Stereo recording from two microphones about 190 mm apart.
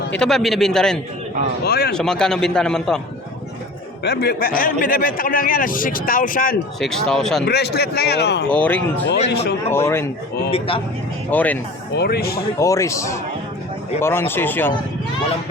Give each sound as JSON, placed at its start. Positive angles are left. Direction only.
{"t": 0.1, "sound": "a man's voice", "side_deg": 5}
{"t": 1.6, "sound": "speech", "side_deg": 55}
{"t": 1.9, "sound": "a man's voice", "side_deg": 5}
{"t": 4.0, "sound": "a man's voice", "side_deg": 60}
{"t": 6.7, "sound": "a man's voice", "side_deg": 0}
{"t": 7.4, "sound": "speech", "side_deg": 60}
{"t": 8.4, "sound": "speech", "side_deg": 5}
{"t": 9.3, "sound": "speech", "side_deg": 60}
{"t": 9.6, "sound": "speech", "side_deg": 15}
{"t": 10.5, "sound": "speech", "side_deg": 30}
{"t": 11.3, "sound": "speech", "side_deg": 10}
{"t": 11.9, "sound": "a man's voice", "side_deg": 55}
{"t": 12.5, "sound": "speech", "side_deg": 15}